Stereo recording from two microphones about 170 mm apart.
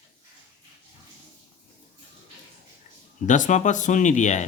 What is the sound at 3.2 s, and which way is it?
Speech, 45° left (ahead or behind).